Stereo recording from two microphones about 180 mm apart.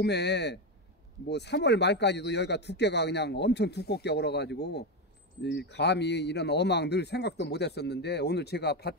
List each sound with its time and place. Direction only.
0.0 s speech: 70° left (ahead or behind)